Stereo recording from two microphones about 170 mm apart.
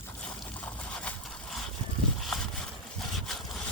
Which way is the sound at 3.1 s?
Centre (ahead or behind).